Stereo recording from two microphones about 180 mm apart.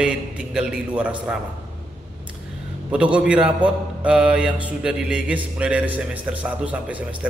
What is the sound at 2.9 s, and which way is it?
A man's voice, 5° right (ahead or behind).